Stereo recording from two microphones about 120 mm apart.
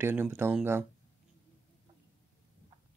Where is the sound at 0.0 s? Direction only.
20° right (ahead or behind).